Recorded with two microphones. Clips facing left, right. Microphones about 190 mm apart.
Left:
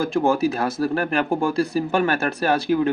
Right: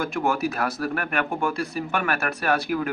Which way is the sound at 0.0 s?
30° left (ahead or behind).